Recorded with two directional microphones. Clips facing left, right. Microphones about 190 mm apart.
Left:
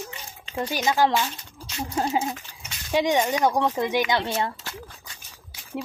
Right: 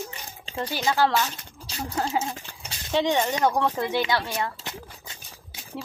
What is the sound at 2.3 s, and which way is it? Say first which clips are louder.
Sheep: right 1 dB; 30° right (ahead or behind).